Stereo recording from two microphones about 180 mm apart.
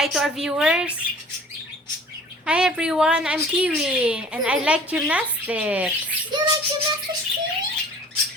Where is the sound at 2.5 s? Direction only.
5° right (ahead or behind).